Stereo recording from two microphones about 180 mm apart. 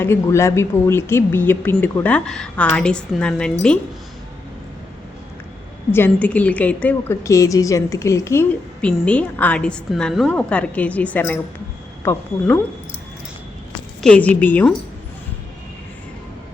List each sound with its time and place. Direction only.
0.0 s a woman's voice: 15° left (ahead or behind)
5.9 s a woman's voice: 10° left (ahead or behind)
14.0 s a woman's voice: 5° left (ahead or behind)